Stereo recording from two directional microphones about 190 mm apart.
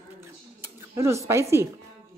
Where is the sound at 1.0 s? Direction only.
15° right (ahead or behind).